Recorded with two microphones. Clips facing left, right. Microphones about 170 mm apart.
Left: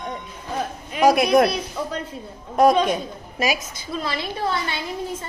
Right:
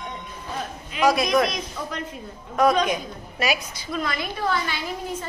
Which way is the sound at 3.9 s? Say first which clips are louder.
Left 1 dB; 30° left (ahead or behind).